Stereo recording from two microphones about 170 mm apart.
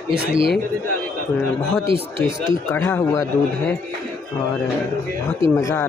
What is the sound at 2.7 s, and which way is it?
Speech, 15° left (ahead or behind).